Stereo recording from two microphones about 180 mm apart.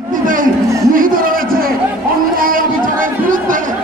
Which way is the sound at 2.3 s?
50° right (ahead or behind).